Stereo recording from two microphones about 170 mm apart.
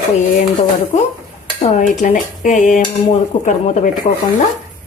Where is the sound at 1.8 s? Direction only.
50° left (ahead or behind).